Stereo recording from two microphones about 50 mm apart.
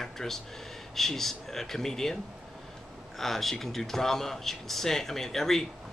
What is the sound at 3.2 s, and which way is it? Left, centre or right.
Speech, centre.